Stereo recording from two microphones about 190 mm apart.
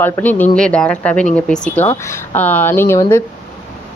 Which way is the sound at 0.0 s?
10° left (ahead or behind).